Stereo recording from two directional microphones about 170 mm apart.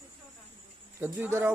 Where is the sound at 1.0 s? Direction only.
15° right (ahead or behind).